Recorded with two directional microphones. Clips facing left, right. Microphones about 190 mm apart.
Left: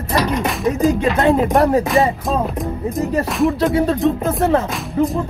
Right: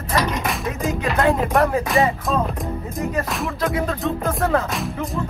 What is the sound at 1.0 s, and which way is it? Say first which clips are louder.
Speech: left 4 dB; 25° left (ahead or behind).